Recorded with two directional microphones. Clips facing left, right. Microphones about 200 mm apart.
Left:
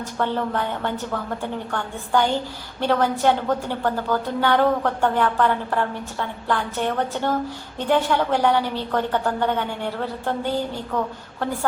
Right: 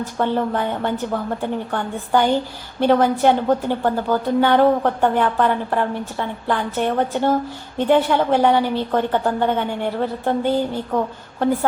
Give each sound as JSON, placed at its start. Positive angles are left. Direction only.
{"t": 0.2, "sound": "a woman's voice", "side_deg": -15}